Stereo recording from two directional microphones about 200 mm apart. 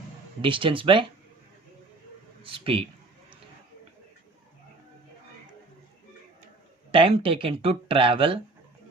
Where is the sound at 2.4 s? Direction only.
25° right (ahead or behind).